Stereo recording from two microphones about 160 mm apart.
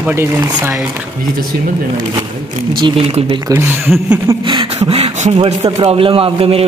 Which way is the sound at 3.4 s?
15° right (ahead or behind).